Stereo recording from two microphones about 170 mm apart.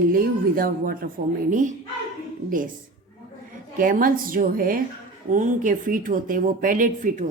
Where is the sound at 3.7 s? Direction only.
55° right (ahead or behind).